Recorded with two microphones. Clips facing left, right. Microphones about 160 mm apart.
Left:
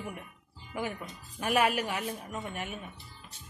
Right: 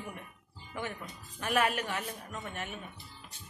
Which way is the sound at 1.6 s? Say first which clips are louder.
Left 2 dB; 5° left (ahead or behind).